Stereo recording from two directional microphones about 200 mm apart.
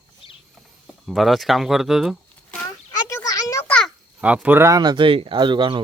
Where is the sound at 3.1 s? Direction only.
15° left (ahead or behind).